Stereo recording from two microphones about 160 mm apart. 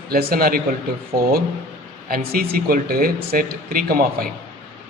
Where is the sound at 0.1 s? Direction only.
70° right (ahead or behind).